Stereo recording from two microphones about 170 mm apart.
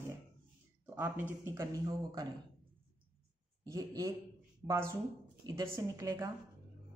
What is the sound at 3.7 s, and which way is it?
Speech, 20° right (ahead or behind).